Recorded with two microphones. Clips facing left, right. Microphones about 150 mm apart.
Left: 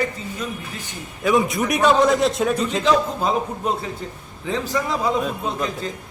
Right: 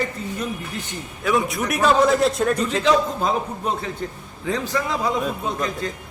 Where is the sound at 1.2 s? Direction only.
Centre (ahead or behind).